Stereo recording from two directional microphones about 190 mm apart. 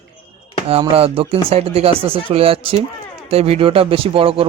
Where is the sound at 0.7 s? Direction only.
30° right (ahead or behind).